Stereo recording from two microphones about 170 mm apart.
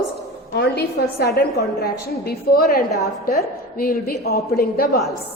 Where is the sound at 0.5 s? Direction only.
75° left (ahead or behind).